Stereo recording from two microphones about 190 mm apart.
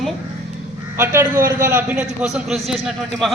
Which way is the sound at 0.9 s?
10° right (ahead or behind).